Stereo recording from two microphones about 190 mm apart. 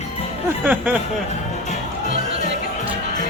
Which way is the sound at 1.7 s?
40° left (ahead or behind).